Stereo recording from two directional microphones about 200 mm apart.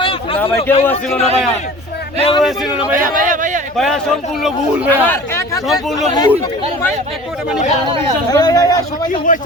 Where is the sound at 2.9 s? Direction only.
45° right (ahead or behind).